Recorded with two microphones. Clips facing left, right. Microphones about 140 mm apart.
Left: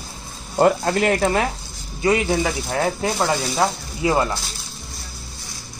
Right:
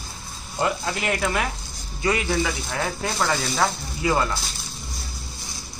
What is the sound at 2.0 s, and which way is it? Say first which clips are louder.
Speech: left 4 dB; 25° left (ahead or behind).